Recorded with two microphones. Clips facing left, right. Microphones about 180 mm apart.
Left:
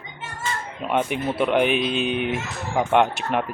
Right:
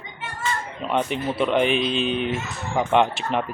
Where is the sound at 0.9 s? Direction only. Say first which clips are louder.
Left 1 dB; 10° left (ahead or behind).